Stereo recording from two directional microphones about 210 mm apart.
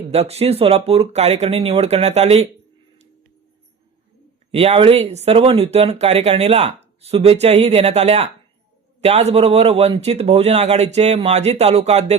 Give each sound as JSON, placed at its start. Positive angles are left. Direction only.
{"t": 0.1, "sound": "speech", "side_deg": -30}
{"t": 4.5, "sound": "speech", "side_deg": -30}